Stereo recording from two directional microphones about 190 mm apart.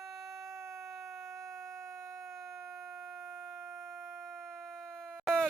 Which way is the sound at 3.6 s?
15° right (ahead or behind).